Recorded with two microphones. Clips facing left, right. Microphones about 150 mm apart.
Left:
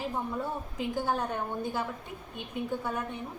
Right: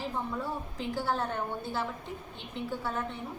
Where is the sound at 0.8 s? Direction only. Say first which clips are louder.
Left 2 dB; 15° left (ahead or behind).